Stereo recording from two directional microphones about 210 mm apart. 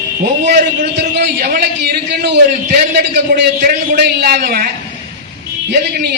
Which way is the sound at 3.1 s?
45° right (ahead or behind).